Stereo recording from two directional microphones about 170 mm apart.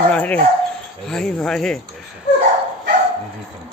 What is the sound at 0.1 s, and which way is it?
Dog, 10° left (ahead or behind).